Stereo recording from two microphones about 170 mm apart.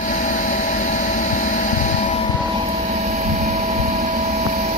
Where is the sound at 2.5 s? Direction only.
40° right (ahead or behind).